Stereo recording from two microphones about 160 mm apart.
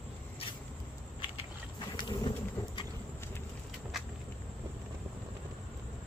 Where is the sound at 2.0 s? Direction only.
30° left (ahead or behind).